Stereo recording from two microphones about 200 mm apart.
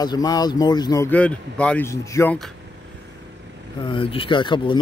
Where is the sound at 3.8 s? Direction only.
25° left (ahead or behind).